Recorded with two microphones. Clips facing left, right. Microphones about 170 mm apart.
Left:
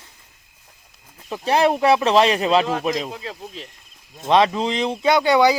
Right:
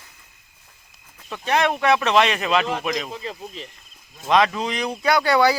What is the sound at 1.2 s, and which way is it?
Speech, 30° left (ahead or behind).